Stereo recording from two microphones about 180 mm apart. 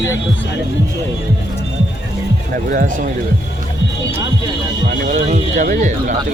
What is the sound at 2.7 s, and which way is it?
Speech, 50° right (ahead or behind).